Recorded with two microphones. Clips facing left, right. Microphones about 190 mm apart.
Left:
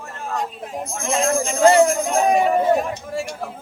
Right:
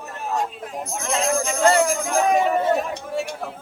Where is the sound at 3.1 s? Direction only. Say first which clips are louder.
Even; centre (ahead or behind).